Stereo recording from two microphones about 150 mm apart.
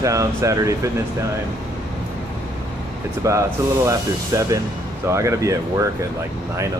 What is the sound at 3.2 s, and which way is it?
Speech, 20° right (ahead or behind).